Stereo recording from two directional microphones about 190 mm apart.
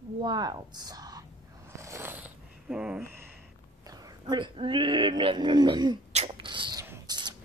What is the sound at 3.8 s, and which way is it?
Speech, 20° right (ahead or behind).